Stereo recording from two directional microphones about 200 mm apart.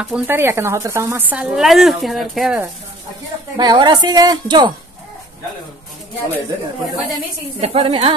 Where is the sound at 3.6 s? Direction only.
20° right (ahead or behind).